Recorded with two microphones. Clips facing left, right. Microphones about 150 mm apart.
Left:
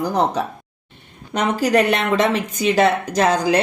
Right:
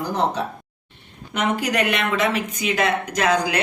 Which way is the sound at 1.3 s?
35° left (ahead or behind).